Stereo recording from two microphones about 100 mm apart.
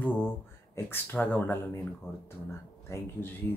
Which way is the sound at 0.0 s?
20° left (ahead or behind).